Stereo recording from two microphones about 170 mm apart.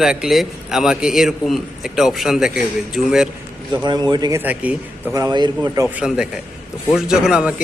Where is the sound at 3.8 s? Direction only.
25° right (ahead or behind); by 5.1 s 10° right (ahead or behind).